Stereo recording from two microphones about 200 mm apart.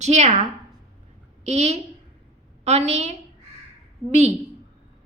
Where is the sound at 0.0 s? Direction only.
35° right (ahead or behind).